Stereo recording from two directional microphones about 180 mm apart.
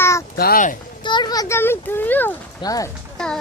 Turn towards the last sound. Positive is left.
turn(degrees=5)  # may be behind; listen again after turning